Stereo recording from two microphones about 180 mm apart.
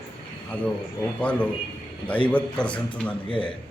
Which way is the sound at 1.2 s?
5° left (ahead or behind).